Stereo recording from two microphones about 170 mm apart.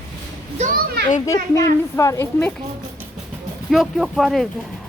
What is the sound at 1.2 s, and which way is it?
Speech, 20° left (ahead or behind).